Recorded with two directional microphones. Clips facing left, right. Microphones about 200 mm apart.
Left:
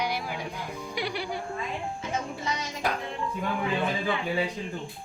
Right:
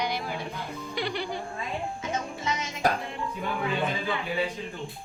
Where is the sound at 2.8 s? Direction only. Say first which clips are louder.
Right 4 dB; 40° right (ahead or behind).